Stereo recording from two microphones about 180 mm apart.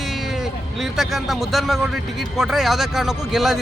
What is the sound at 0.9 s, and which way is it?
Speech, centre (ahead or behind).